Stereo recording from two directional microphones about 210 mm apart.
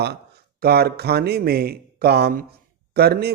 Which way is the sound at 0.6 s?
50° right (ahead or behind).